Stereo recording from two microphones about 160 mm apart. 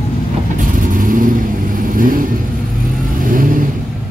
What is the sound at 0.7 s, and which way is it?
Vehicle, 55° right (ahead or behind).